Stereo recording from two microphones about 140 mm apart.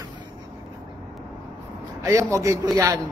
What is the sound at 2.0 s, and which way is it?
A man's voice, 20° right (ahead or behind).